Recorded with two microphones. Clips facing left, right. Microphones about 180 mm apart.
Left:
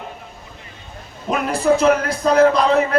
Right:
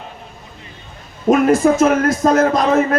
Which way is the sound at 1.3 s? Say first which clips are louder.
Right 5 dB; 45° right (ahead or behind).